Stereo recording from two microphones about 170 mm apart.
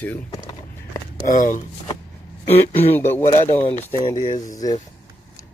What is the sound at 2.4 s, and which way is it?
Speech, 10° left (ahead or behind).